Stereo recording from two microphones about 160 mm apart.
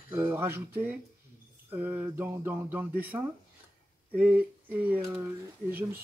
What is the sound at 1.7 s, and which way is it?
Speech, 10° right (ahead or behind).